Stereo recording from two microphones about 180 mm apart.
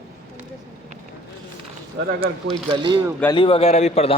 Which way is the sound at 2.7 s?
25° right (ahead or behind).